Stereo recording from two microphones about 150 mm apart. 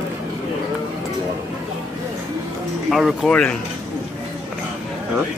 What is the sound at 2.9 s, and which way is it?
Speech, centre (ahead or behind).